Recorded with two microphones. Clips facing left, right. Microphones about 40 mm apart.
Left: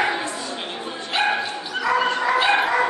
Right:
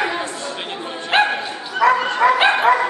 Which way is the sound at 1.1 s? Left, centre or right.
Right.